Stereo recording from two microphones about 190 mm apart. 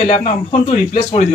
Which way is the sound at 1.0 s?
25° left (ahead or behind).